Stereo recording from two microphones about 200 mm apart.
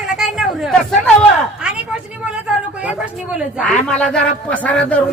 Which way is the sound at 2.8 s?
5° right (ahead or behind).